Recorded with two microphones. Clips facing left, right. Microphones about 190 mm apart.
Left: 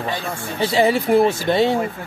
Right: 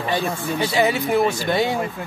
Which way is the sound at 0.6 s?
30° left (ahead or behind).